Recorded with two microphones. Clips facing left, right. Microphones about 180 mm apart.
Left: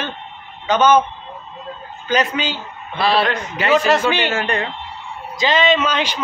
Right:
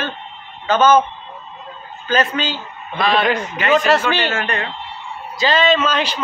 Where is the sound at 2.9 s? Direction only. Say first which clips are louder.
Even; 35° left (ahead or behind).